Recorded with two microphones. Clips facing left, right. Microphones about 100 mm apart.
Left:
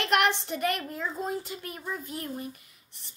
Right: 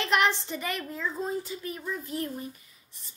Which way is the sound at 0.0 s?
55° left (ahead or behind).